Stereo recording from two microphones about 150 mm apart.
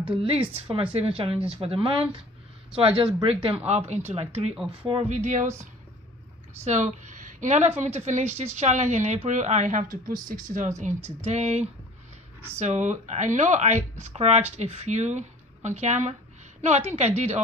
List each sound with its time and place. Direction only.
0.1 s speech: 35° right (ahead or behind); by 5.5 s 55° right (ahead or behind)
6.6 s a woman's voice: 50° right (ahead or behind)
11.1 s speech: 50° right (ahead or behind)